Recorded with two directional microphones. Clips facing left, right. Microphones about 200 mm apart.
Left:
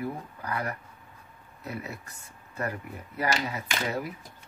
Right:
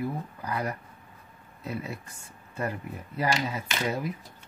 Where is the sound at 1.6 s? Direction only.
25° right (ahead or behind).